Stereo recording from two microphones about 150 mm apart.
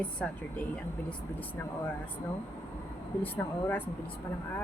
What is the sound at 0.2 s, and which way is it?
Speech, 10° left (ahead or behind).